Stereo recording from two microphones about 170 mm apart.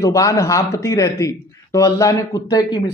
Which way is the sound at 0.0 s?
20° left (ahead or behind).